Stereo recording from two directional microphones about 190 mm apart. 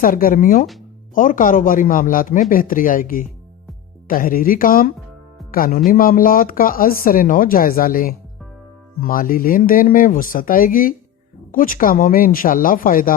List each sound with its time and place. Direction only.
0.0 s speech: 50° left (ahead or behind)